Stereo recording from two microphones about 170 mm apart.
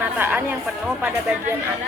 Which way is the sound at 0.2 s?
10° right (ahead or behind).